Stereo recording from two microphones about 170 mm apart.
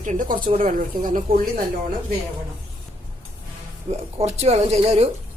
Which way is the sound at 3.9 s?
40° right (ahead or behind).